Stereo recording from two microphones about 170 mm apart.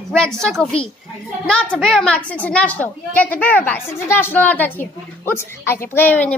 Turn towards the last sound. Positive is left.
turn(degrees=10)  # may be behind; listen again after turning